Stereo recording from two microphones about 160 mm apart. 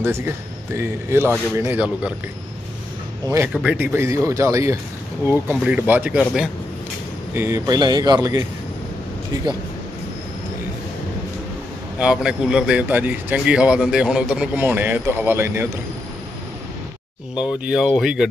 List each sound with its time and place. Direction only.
0.0 s speech: 15° right (ahead or behind)
3.5 s speech: 10° right (ahead or behind)
7.3 s speech: 15° right (ahead or behind)
12.0 s speech: 5° right (ahead or behind)
17.4 s speech: 5° right (ahead or behind)